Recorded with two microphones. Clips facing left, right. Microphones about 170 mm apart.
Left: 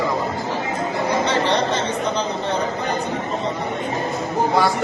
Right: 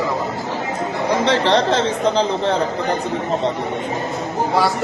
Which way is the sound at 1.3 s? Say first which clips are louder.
Right 4 dB; 90° right.